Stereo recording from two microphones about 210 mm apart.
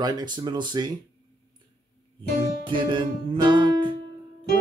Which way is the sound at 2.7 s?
20° right (ahead or behind).